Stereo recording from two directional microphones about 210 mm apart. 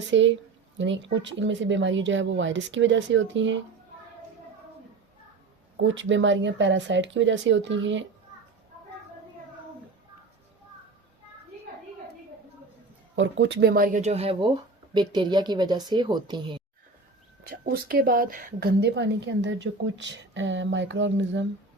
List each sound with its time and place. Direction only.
0.1 s a woman's voice: 60° right (ahead or behind)
5.8 s a woman's voice: 60° right (ahead or behind)
13.1 s speech: 60° right (ahead or behind); by 16.6 s 20° right (ahead or behind)
17.5 s a woman's voice: 45° right (ahead or behind)